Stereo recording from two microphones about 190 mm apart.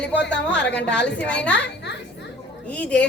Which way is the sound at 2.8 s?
5° left (ahead or behind).